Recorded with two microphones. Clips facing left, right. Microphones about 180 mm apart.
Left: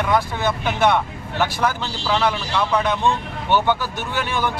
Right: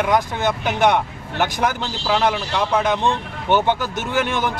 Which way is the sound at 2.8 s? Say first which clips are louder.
Right 1 dB; 20° right (ahead or behind).